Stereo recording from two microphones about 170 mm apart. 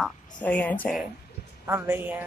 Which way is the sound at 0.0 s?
10° left (ahead or behind).